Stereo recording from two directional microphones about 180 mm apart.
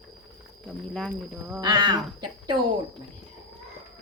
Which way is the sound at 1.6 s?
25° right (ahead or behind).